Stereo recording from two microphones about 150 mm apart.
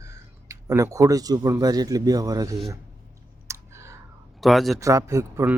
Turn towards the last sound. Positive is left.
turn(degrees=-15)  # may be behind; listen again after turning